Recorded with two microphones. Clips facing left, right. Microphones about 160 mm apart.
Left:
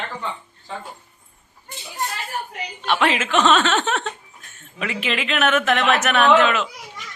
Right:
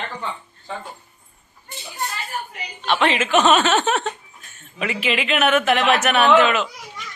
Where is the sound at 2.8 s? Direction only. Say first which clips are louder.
Right 1 dB; 5° left (ahead or behind).